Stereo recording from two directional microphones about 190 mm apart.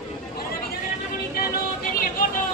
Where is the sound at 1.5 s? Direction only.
45° left (ahead or behind).